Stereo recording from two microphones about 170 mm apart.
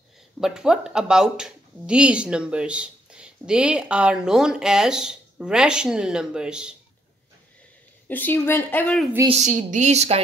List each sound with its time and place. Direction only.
0.4 s speech: 5° right (ahead or behind)
8.1 s a woman's voice: 10° left (ahead or behind)
9.3 s speech: 45° right (ahead or behind)